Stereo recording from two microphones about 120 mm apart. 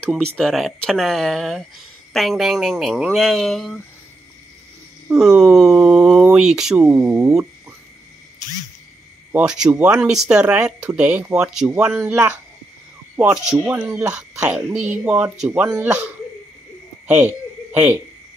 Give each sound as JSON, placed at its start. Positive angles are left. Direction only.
{"t": 0.0, "sound": "speech", "side_deg": 5}
{"t": 5.0, "sound": "speech", "side_deg": -5}
{"t": 7.0, "sound": "speech", "side_deg": -15}
{"t": 9.3, "sound": "speech", "side_deg": -5}
{"t": 12.1, "sound": "speech", "side_deg": -20}
{"t": 13.1, "sound": "speech", "side_deg": -10}
{"t": 17.7, "sound": "speech", "side_deg": -15}